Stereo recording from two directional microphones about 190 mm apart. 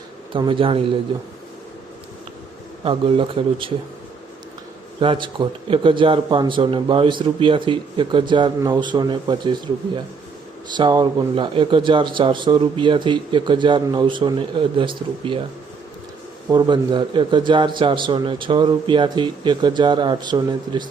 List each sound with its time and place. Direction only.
0.3 s speech: 25° right (ahead or behind)
2.8 s speech: 25° right (ahead or behind)
4.9 s speech: 25° right (ahead or behind)
16.5 s speech: 25° right (ahead or behind)